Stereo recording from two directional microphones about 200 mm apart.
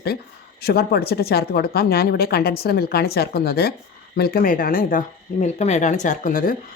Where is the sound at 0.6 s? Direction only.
50° left (ahead or behind).